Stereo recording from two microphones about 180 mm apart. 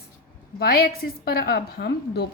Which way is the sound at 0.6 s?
55° left (ahead or behind).